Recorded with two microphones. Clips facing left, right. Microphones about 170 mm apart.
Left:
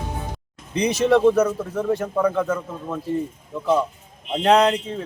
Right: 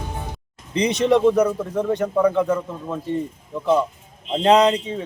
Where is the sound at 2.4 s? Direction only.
15° right (ahead or behind).